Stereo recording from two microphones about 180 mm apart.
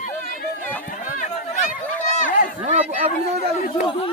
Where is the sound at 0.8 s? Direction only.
50° left (ahead or behind).